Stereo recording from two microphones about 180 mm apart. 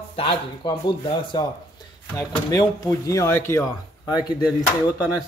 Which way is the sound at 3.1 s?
15° left (ahead or behind).